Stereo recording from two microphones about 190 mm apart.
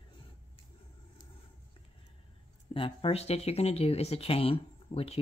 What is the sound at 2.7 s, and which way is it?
Speech, 30° left (ahead or behind).